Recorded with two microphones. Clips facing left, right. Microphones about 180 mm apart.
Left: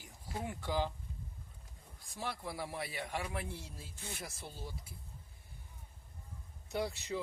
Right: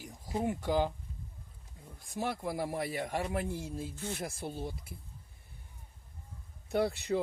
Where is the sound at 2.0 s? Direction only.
50° right (ahead or behind).